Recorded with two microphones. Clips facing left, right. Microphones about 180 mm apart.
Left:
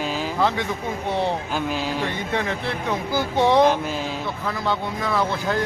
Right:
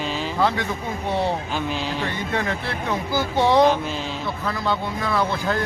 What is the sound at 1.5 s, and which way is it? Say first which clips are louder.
Speech: left 1 dB; 10° left (ahead or behind).